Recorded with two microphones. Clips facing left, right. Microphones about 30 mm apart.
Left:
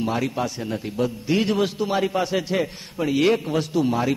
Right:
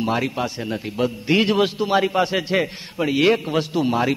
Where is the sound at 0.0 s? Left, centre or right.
Right.